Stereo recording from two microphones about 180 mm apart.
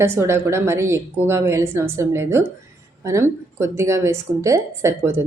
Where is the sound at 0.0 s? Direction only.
15° right (ahead or behind).